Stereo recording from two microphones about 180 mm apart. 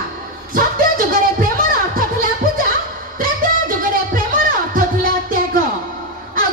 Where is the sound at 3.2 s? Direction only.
50° right (ahead or behind).